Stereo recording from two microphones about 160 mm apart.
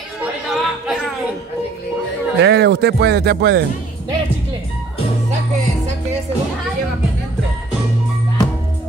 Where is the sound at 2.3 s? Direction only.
90° right.